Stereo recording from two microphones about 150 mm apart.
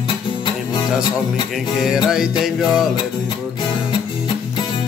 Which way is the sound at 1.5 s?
Centre (ahead or behind).